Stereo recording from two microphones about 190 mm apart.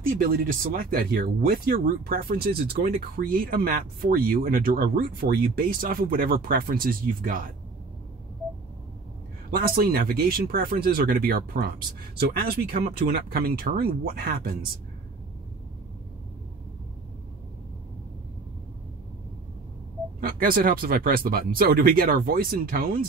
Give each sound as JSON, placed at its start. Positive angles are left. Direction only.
{"t": 0.2, "sound": "speech", "side_deg": -50}
{"t": 9.5, "sound": "speech", "side_deg": -50}
{"t": 20.2, "sound": "speech", "side_deg": -50}